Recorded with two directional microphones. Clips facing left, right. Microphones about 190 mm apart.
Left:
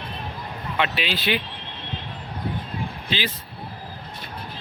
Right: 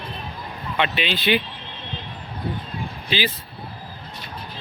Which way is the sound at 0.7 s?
5° left (ahead or behind).